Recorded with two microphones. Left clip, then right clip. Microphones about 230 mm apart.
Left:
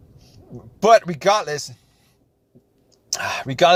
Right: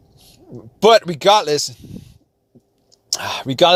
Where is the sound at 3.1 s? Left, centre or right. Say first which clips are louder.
Right 2 dB; right.